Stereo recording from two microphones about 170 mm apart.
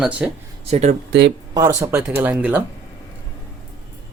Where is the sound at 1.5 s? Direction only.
15° right (ahead or behind).